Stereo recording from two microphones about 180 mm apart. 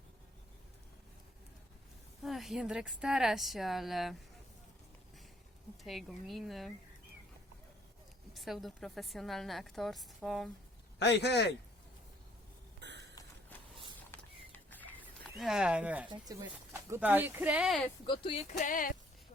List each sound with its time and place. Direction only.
2.2 s a woman's voice: centre (ahead or behind)
5.8 s a woman's voice: centre (ahead or behind)
8.3 s a woman's voice: centre (ahead or behind)
11.0 s a man's voice: 70° left (ahead or behind)
12.8 s a sound: 75° right (ahead or behind)
14.1 s a sound: 10° left (ahead or behind)
15.4 s a woman's voice: centre (ahead or behind)
16.0 s speech: 20° right (ahead or behind)
16.9 s speech: 10° right (ahead or behind)
18.0 s speech: 25° left (ahead or behind)
18.5 s speech: 50° left (ahead or behind)